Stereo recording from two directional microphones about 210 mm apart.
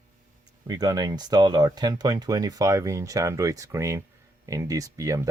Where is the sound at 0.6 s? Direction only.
20° right (ahead or behind).